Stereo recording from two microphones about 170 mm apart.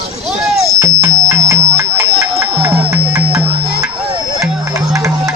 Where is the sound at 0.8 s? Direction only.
20° right (ahead or behind).